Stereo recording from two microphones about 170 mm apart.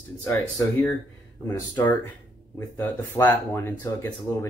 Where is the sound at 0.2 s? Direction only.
15° left (ahead or behind).